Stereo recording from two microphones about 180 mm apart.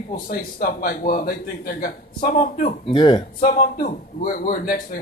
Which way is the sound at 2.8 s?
30° left (ahead or behind).